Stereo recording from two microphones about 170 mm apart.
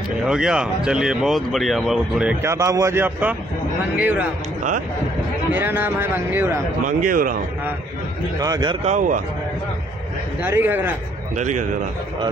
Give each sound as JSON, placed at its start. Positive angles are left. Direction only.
{"t": 0.2, "sound": "speech", "side_deg": -5}
{"t": 2.4, "sound": "speech", "side_deg": -20}
{"t": 5.5, "sound": "speech", "side_deg": -10}
{"t": 7.0, "sound": "a man's voice", "side_deg": -55}
{"t": 8.4, "sound": "speech", "side_deg": -25}
{"t": 8.8, "sound": "a man's voice", "side_deg": -45}
{"t": 10.4, "sound": "speech", "side_deg": -10}
{"t": 11.3, "sound": "a man's voice", "side_deg": -45}